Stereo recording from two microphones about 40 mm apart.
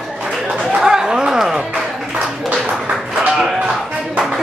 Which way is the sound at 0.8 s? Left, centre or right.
Centre.